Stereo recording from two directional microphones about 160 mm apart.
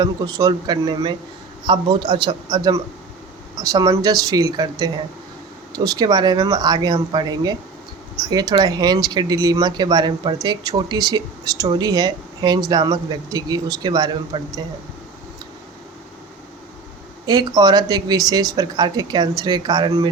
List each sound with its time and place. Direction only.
0.0 s speech: 25° right (ahead or behind)
17.2 s speech: 25° right (ahead or behind)